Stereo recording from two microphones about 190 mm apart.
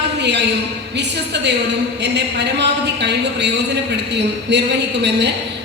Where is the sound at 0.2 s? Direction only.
65° right (ahead or behind).